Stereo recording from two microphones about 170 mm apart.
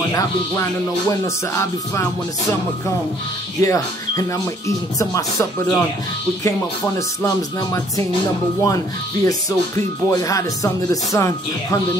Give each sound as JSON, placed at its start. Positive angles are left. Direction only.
{"t": 1.2, "sound": "music", "side_deg": 15}
{"t": 3.6, "sound": "speech", "side_deg": 20}
{"t": 8.6, "sound": "speech", "side_deg": 20}
{"t": 11.1, "sound": "music", "side_deg": 15}